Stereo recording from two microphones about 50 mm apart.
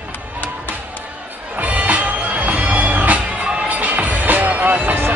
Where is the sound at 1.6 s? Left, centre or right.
Right.